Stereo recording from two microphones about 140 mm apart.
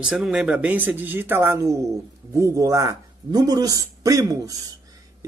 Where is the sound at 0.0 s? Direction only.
5° right (ahead or behind).